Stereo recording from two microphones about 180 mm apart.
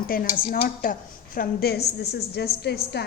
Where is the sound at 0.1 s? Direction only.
55° left (ahead or behind).